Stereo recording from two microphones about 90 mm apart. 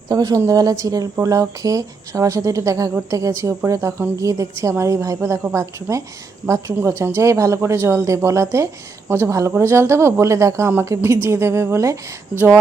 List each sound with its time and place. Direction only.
0.1 s speech: 45° right (ahead or behind)